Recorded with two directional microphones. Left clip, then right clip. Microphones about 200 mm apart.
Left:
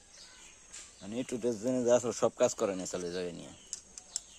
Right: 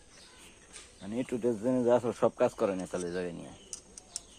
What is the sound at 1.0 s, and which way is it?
Speech, 25° left (ahead or behind).